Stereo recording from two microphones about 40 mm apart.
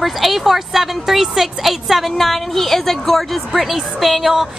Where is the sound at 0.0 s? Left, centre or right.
Centre.